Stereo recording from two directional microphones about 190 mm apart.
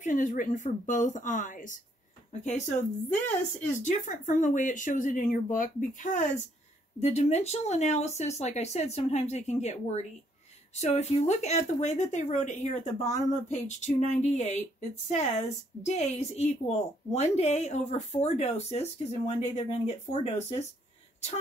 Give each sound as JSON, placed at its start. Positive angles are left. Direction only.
{"t": 0.0, "sound": "speech", "side_deg": 40}